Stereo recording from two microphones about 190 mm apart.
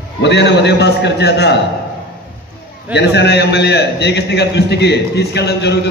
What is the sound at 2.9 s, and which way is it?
A man's voice, 60° left (ahead or behind).